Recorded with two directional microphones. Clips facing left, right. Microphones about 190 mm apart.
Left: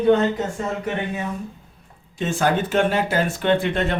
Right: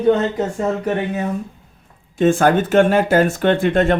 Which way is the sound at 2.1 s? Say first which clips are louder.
Right 7 dB; 50° right (ahead or behind).